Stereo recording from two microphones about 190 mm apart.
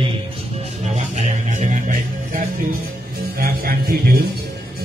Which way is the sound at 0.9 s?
40° right (ahead or behind).